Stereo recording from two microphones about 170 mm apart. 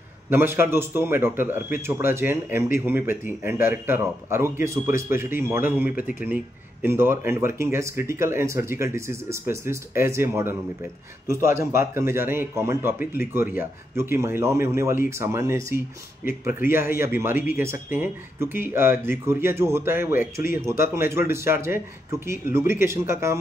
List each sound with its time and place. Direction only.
0.3 s speech: 15° right (ahead or behind)